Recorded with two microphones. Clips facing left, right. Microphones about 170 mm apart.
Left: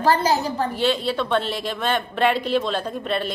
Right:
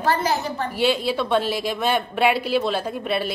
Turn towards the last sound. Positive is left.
turn(degrees=-10)  # may be behind; listen again after turning